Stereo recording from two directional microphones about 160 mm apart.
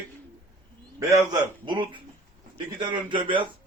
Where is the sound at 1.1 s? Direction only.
25° right (ahead or behind).